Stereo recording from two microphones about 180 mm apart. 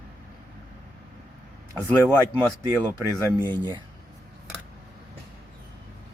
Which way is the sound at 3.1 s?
25° right (ahead or behind).